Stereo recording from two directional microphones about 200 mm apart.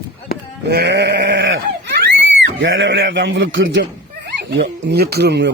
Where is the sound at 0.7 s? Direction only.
55° right (ahead or behind).